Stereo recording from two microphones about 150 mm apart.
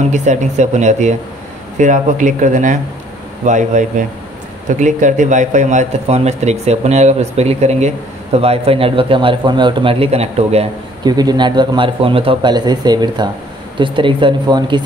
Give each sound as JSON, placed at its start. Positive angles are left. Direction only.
{"t": 0.1, "sound": "a man's voice", "side_deg": -55}
{"t": 11.1, "sound": "speech", "side_deg": -25}